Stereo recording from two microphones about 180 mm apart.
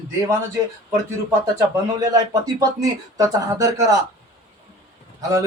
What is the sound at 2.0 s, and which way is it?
Speech, 20° right (ahead or behind).